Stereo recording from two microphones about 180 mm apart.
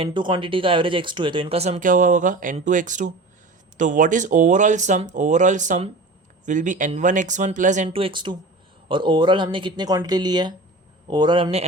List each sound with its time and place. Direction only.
0.0 s speech: 25° right (ahead or behind); by 7.9 s 45° right (ahead or behind)
7.9 s speech: 30° right (ahead or behind)